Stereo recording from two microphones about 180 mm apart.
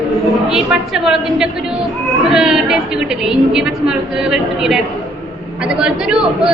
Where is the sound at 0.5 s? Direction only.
5° right (ahead or behind).